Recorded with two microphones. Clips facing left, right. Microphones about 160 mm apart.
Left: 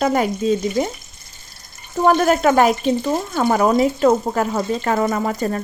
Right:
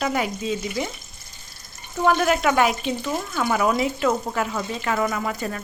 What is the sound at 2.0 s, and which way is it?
Speech, 40° left (ahead or behind).